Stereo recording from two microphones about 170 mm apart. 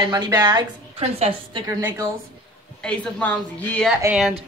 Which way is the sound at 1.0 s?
40° right (ahead or behind).